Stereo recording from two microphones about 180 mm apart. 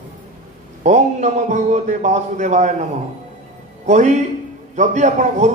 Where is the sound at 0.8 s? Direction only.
40° right (ahead or behind).